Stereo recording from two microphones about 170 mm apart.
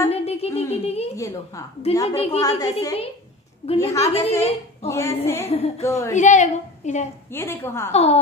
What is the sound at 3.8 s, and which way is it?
Speech, 20° left (ahead or behind).